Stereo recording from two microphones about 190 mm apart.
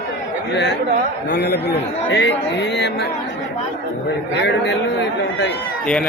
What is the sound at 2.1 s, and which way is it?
Speech, 65° left (ahead or behind).